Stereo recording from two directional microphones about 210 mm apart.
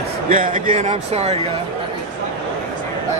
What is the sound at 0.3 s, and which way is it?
Speech, 40° right (ahead or behind).